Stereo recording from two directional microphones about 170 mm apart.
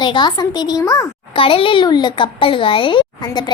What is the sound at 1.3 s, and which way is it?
Speech, 30° left (ahead or behind).